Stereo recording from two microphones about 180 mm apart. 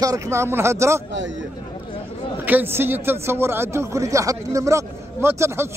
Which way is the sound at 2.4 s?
10° right (ahead or behind).